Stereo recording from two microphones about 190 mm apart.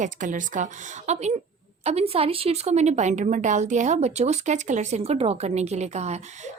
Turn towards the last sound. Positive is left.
turn(degrees=-35)  # may be behind; listen again after turning